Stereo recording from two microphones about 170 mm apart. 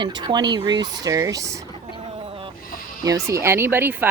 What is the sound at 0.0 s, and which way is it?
Speech, 25° right (ahead or behind).